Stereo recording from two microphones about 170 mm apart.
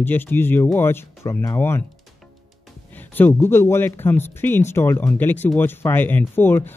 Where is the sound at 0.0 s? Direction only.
10° left (ahead or behind).